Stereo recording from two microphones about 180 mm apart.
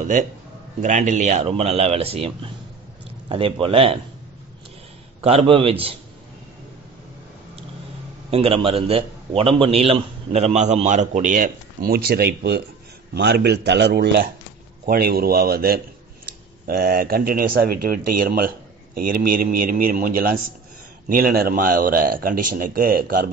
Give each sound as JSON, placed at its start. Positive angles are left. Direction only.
{"t": 0.8, "sound": "a man's voice", "side_deg": -45}
{"t": 5.2, "sound": "a man's voice", "side_deg": -35}
{"t": 8.3, "sound": "a man's voice", "side_deg": -35}